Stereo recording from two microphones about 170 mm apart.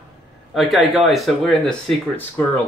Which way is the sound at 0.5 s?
Centre (ahead or behind).